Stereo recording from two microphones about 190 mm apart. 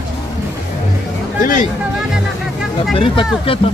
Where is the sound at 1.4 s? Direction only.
45° left (ahead or behind).